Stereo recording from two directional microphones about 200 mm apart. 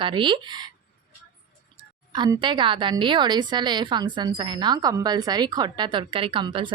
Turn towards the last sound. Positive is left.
turn(degrees=-25)  # may be behind; listen again after turning